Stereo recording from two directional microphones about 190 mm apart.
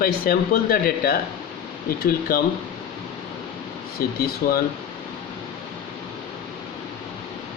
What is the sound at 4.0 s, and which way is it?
Speech, 50° left (ahead or behind).